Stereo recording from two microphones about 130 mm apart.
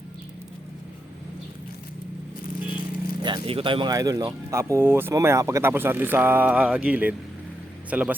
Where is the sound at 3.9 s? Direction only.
30° right (ahead or behind).